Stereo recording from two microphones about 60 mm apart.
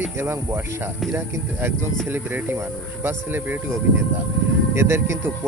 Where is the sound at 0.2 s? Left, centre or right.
Right.